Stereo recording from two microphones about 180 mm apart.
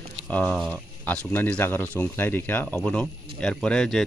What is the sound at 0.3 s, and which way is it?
Speech, 5° left (ahead or behind).